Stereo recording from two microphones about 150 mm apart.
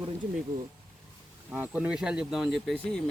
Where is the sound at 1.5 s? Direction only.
10° right (ahead or behind).